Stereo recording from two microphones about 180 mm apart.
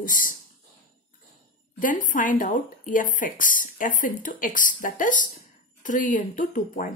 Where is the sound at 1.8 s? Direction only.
45° left (ahead or behind).